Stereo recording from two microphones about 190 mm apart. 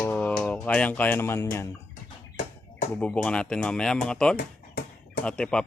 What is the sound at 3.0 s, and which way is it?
Speech, 5° left (ahead or behind).